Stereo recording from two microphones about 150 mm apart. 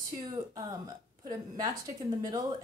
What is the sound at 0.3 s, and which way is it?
A woman's voice, 25° right (ahead or behind).